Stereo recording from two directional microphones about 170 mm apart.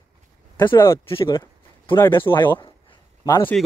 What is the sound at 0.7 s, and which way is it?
Speech, 15° left (ahead or behind).